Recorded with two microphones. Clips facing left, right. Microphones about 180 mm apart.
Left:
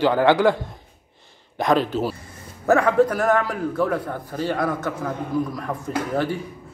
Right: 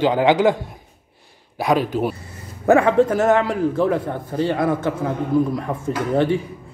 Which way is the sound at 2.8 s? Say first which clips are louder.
Right 2 dB; 25° right (ahead or behind).